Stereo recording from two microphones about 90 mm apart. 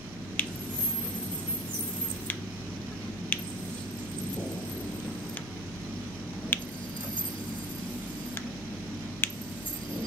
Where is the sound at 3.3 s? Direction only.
20° left (ahead or behind).